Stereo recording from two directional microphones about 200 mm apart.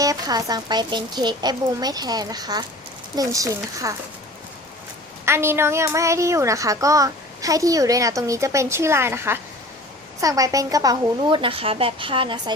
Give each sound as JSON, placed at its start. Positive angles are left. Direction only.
{"t": 0.0, "sound": "a child's voice", "side_deg": -20}
{"t": 5.2, "sound": "a woman's voice", "side_deg": -10}